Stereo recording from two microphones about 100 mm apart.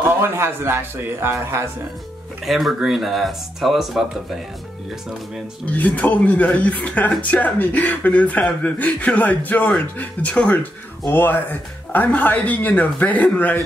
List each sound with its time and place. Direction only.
0.2 s a man's voice: 25° right (ahead or behind)
2.4 s speech: centre (ahead or behind)
5.7 s speech: 15° left (ahead or behind)